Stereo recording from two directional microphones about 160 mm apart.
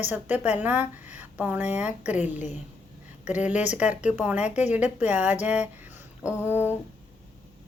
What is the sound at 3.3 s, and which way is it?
Speech, 10° right (ahead or behind).